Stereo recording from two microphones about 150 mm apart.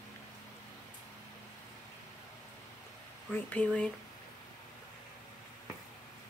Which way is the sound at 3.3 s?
10° left (ahead or behind).